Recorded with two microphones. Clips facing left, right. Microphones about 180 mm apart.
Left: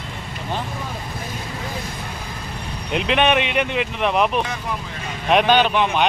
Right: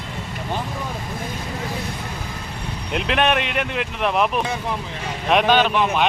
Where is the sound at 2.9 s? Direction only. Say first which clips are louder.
Left 2 dB; centre (ahead or behind).